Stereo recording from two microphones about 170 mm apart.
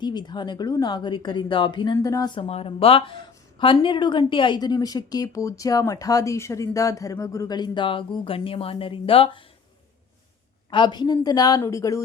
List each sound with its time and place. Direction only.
0.0 s a woman's voice: 25° left (ahead or behind)
10.7 s a woman's voice: 30° left (ahead or behind)